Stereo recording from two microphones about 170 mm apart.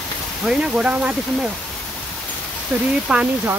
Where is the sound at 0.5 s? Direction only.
5° right (ahead or behind).